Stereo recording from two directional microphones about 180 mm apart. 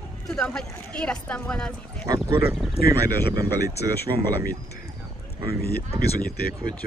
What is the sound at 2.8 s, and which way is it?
Speech, 60° left (ahead or behind).